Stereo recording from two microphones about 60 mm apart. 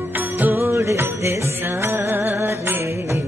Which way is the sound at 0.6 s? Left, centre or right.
Right.